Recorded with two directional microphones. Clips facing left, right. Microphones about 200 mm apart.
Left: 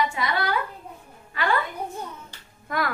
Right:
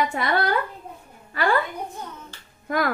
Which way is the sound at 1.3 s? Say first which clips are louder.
Right 3 dB; 45° right (ahead or behind).